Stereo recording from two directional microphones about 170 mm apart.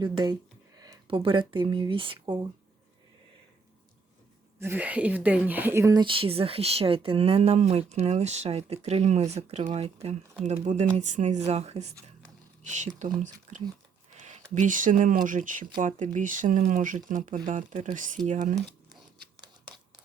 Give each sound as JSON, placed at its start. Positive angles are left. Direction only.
{"t": 1.0, "sound": "speech", "side_deg": -30}
{"t": 4.6, "sound": "speech", "side_deg": -10}
{"t": 14.2, "sound": "speech", "side_deg": -45}